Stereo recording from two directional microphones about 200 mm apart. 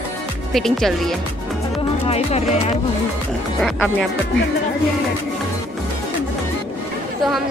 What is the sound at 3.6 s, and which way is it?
Speech, centre (ahead or behind).